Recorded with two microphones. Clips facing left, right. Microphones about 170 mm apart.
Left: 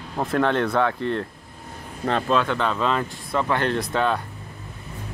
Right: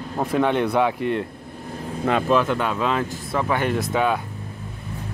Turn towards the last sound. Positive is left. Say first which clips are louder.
# right 1 dB
turn(degrees=-10)  # may be behind; listen again after turning